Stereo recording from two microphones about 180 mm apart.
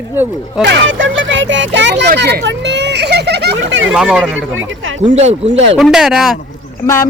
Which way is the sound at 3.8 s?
5° right (ahead or behind).